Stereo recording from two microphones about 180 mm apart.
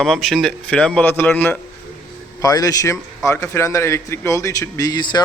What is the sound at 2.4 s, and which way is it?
Speech, 20° left (ahead or behind).